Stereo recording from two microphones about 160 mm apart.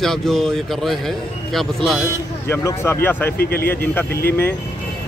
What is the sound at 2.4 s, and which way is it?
Speech, 15° left (ahead or behind).